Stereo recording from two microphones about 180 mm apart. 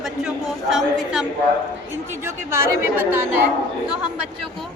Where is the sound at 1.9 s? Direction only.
15° right (ahead or behind).